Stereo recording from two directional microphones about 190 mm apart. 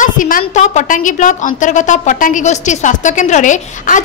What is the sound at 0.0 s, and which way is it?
A woman's voice, 45° left (ahead or behind).